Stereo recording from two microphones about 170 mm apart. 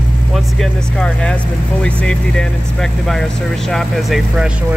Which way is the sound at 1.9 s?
5° left (ahead or behind).